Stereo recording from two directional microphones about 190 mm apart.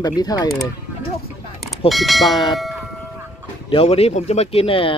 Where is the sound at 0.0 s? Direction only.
20° left (ahead or behind).